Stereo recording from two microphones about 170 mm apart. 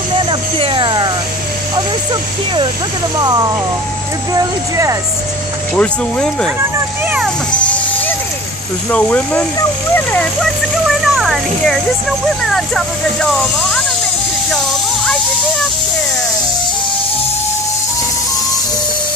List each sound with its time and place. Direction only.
0.3 s a sound: 30° right (ahead or behind)
4.3 s speech: 20° right (ahead or behind)
5.8 s speech: 5° left (ahead or behind)
8.9 s speech: 10° left (ahead or behind)
11.0 s a sound: centre (ahead or behind)
12.4 s speech: 5° left (ahead or behind)